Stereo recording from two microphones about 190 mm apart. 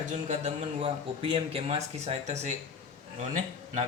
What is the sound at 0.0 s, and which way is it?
Speech, 35° right (ahead or behind).